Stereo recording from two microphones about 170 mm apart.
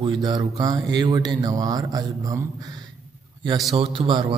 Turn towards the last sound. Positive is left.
turn(degrees=-30)  # may be behind; listen again after turning